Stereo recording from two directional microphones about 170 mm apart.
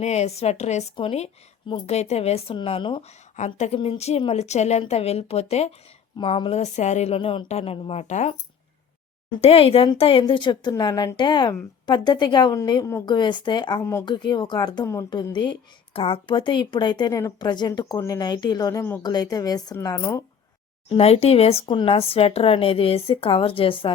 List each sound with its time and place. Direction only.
0.0 s speech: 40° left (ahead or behind)
3.3 s speech: 40° left (ahead or behind)
9.4 s speech: 35° left (ahead or behind); by 20.2 s 20° left (ahead or behind)
20.9 s speech: 35° left (ahead or behind)